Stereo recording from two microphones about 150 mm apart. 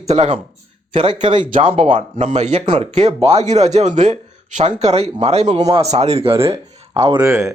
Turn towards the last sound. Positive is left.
turn(degrees=-20)  # may be behind; listen again after turning